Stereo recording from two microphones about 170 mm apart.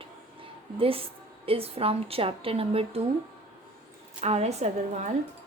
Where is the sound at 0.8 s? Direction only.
35° right (ahead or behind).